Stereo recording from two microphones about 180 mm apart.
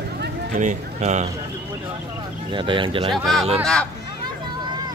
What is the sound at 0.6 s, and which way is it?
Speech, 40° right (ahead or behind).